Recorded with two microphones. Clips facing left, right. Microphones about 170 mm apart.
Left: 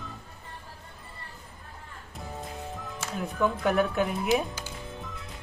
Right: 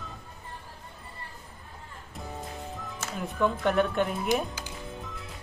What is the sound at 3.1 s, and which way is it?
Speech, centre (ahead or behind).